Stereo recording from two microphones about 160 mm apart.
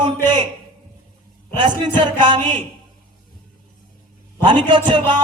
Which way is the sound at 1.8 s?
30° right (ahead or behind).